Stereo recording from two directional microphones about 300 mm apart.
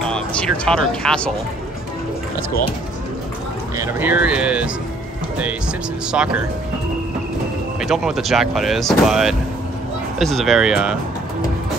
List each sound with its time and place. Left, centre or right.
0.0 s speech: centre
3.7 s speech: centre
7.8 s speech: centre